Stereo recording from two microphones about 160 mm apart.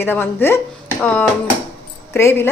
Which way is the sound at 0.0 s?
15° left (ahead or behind).